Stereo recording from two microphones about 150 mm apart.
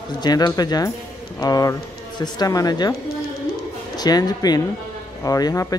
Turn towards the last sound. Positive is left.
turn(degrees=25)  # may be behind; listen again after turning